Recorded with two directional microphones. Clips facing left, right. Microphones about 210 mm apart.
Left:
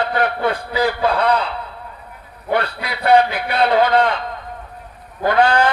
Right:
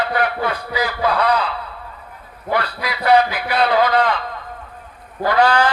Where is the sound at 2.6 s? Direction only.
25° left (ahead or behind).